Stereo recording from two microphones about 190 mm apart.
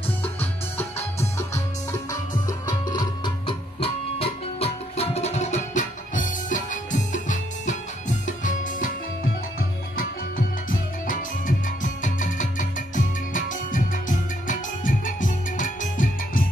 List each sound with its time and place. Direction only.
0.2 s music: 10° left (ahead or behind); by 16.4 s 45° left (ahead or behind)